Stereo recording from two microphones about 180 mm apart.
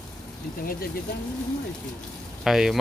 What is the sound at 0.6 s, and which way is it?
Speech, 55° left (ahead or behind).